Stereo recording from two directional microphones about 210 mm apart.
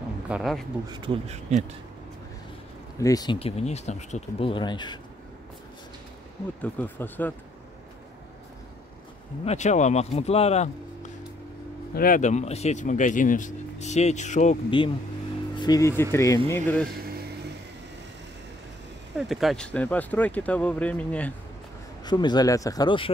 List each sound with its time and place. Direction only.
0.3 s speech: centre (ahead or behind)
0.8 s speech: 20° right (ahead or behind)
3.0 s speech: 15° left (ahead or behind)
6.6 s speech: 10° left (ahead or behind)
9.4 s speech: 30° left (ahead or behind)
11.9 s speech: 45° left (ahead or behind)
15.5 s speech: 20° left (ahead or behind)
19.1 s speech: centre (ahead or behind)
22.0 s speech: 20° left (ahead or behind)